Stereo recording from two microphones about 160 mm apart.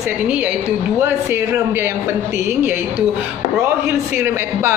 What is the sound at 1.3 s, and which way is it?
Speech, 15° right (ahead or behind).